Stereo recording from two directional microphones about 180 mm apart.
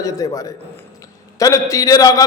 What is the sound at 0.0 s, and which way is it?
A man's voice, 20° left (ahead or behind).